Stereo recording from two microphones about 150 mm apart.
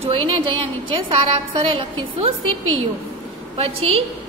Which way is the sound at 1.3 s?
40° right (ahead or behind).